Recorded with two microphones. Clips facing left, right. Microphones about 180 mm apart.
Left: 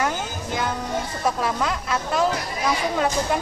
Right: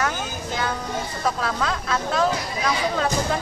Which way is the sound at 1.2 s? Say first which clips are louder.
Left 1 dB; 15° left (ahead or behind).